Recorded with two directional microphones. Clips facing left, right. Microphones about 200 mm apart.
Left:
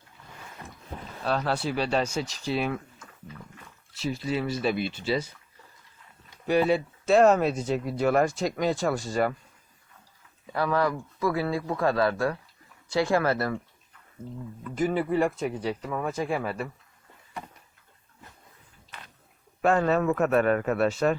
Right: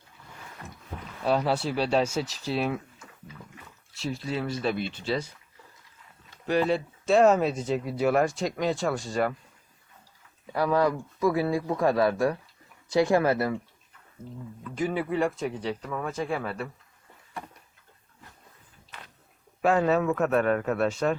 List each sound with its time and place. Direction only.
1.2 s speech: 10° right (ahead or behind)
3.9 s speech: centre (ahead or behind)
6.3 s speech: 10° left (ahead or behind)
10.5 s speech: 15° right (ahead or behind)
14.6 s speech: centre (ahead or behind)
19.6 s speech: 5° right (ahead or behind)